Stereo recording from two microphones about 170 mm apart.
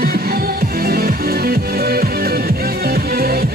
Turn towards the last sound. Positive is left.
turn(degrees=-65)  # may be behind; listen again after turning